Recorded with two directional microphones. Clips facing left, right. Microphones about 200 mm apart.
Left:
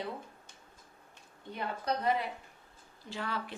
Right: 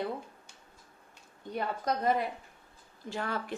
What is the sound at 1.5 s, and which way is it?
A woman's voice, 45° right (ahead or behind).